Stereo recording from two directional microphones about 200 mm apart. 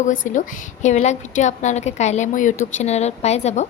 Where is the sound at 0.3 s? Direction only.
35° left (ahead or behind).